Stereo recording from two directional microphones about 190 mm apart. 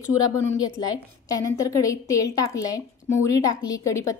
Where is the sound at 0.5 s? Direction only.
20° left (ahead or behind).